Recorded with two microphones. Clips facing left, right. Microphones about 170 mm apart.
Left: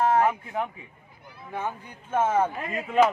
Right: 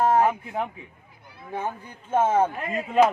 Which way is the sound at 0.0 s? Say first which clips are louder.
Right 2 dB; 30° right (ahead or behind).